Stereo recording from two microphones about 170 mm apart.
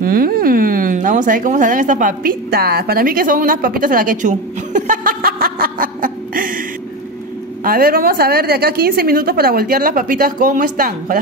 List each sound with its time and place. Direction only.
0.0 s speech: 60° right (ahead or behind)
7.6 s a woman's voice: 60° right (ahead or behind)